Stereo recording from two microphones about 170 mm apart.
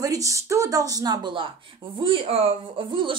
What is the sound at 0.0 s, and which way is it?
Speech, 20° right (ahead or behind).